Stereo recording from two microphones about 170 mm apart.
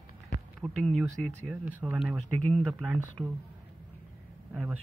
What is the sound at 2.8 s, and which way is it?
Speech, 5° right (ahead or behind).